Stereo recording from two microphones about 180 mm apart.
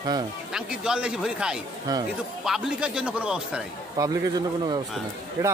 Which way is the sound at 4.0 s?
20° right (ahead or behind).